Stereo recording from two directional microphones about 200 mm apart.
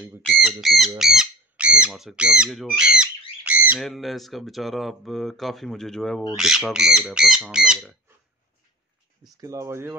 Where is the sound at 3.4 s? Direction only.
5° right (ahead or behind).